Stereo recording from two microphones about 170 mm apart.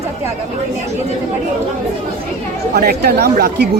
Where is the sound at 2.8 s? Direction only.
65° right (ahead or behind).